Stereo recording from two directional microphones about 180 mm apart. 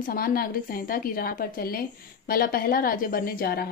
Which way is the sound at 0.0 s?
55° left (ahead or behind).